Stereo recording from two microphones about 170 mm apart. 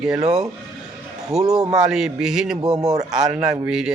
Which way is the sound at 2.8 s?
20° right (ahead or behind).